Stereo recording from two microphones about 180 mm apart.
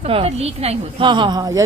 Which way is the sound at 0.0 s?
35° right (ahead or behind).